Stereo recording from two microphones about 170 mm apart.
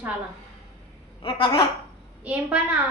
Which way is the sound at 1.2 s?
30° left (ahead or behind).